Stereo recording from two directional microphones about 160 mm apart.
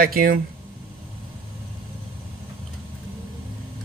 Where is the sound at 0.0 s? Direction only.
65° right (ahead or behind).